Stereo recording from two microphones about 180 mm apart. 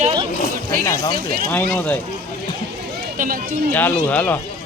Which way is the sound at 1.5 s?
10° left (ahead or behind).